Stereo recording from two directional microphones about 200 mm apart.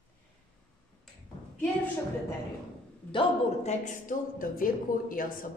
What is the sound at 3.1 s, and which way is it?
Speech, 35° left (ahead or behind).